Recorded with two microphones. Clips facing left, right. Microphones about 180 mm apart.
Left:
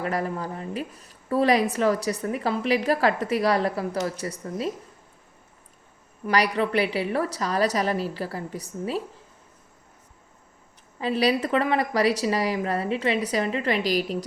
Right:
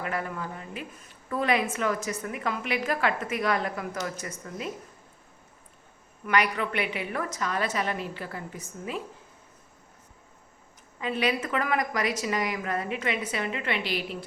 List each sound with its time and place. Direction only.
0.0 s a woman's voice: 35° left (ahead or behind)
6.2 s a woman's voice: 35° left (ahead or behind)
11.0 s a woman's voice: 35° left (ahead or behind)